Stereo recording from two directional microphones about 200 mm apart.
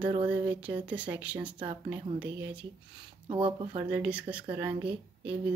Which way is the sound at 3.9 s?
5° right (ahead or behind).